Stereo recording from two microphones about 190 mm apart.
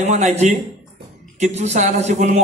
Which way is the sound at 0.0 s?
35° right (ahead or behind).